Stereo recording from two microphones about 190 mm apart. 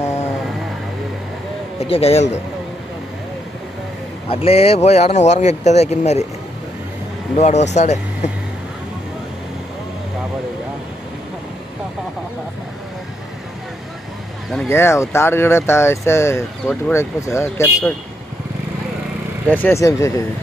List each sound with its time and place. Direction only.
1.8 s speech: 30° left (ahead or behind)
4.3 s speech: 30° left (ahead or behind)
7.3 s speech: 35° left (ahead or behind)
14.5 s speech: 5° left (ahead or behind)
14.8 s speech: 15° left (ahead or behind)
19.5 s speech: 10° left (ahead or behind)